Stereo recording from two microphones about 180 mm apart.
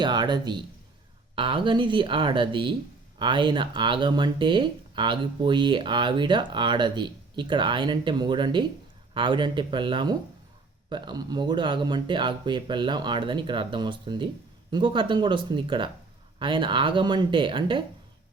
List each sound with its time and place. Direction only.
0.0 s speech: 25° right (ahead or behind)